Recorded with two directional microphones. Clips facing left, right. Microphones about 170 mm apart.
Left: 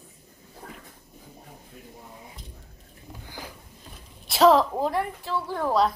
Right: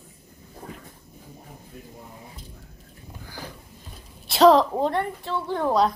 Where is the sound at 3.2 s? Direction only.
15° left (ahead or behind).